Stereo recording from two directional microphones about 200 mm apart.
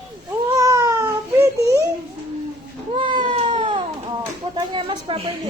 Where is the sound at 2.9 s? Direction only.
25° right (ahead or behind).